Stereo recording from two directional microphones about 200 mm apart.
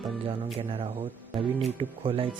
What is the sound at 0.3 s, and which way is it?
Speech, 25° right (ahead or behind).